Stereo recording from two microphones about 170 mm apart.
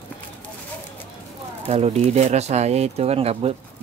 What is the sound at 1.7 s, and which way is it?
Speech, 40° right (ahead or behind).